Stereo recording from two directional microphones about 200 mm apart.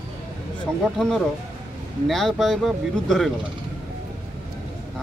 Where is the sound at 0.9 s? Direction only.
Centre (ahead or behind).